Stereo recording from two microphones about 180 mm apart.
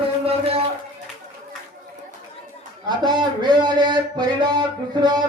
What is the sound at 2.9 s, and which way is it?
A man's voice, 25° right (ahead or behind).